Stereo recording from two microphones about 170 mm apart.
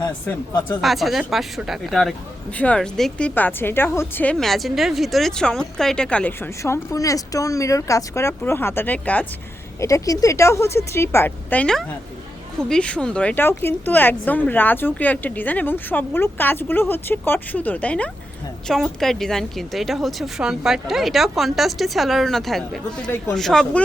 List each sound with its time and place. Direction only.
0.8 s a woman's voice: centre (ahead or behind)
9.8 s a woman's voice: 20° left (ahead or behind); by 23.8 s centre (ahead or behind)